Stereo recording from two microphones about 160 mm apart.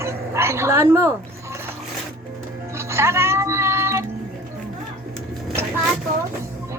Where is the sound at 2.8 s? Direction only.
15° right (ahead or behind).